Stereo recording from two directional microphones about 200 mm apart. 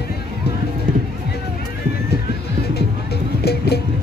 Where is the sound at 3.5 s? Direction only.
55° left (ahead or behind).